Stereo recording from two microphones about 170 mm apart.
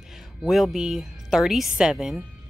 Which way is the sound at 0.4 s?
Centre (ahead or behind).